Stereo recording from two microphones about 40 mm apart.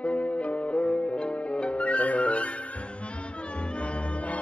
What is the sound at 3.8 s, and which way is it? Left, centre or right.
Music, left.